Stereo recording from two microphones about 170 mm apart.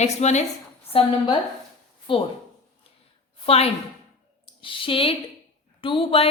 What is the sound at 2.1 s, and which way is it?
Speech, 30° left (ahead or behind).